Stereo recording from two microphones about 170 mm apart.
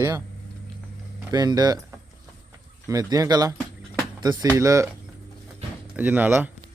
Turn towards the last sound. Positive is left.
turn(degrees=-10)  # may be behind; listen again after turning